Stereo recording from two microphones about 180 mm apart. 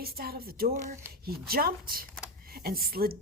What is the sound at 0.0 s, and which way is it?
Speech, 55° right (ahead or behind).